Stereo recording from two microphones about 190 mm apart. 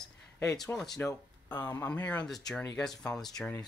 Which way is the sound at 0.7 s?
Centre (ahead or behind).